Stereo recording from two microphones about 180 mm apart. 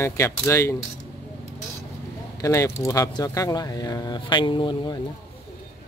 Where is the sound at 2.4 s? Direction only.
15° left (ahead or behind).